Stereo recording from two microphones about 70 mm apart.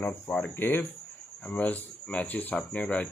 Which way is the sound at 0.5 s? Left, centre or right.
Left.